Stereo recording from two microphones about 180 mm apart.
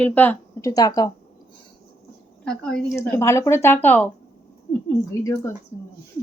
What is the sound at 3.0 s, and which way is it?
A woman's voice, 15° left (ahead or behind).